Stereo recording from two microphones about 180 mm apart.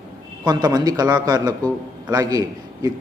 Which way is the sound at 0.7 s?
20° right (ahead or behind).